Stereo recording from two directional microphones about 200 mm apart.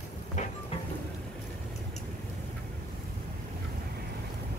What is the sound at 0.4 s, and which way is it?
Vehicle, 40° left (ahead or behind).